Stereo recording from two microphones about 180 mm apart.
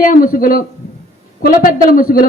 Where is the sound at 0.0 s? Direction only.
50° left (ahead or behind).